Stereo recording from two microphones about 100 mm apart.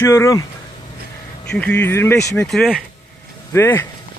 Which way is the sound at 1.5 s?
15° left (ahead or behind).